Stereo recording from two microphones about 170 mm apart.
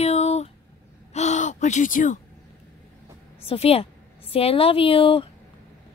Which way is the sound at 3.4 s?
35° left (ahead or behind).